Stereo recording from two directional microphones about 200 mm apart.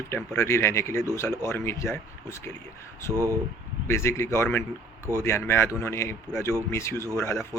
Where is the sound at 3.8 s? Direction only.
15° left (ahead or behind).